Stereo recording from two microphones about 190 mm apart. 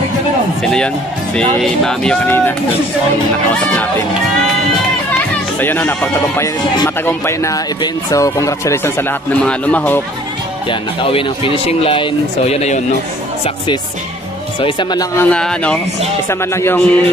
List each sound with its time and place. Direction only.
0.6 s speech: 5° left (ahead or behind)
5.6 s speech: 10° left (ahead or behind)
10.7 s speech: 25° left (ahead or behind)
14.6 s speech: 25° left (ahead or behind)
15.1 s speech: 5° left (ahead or behind)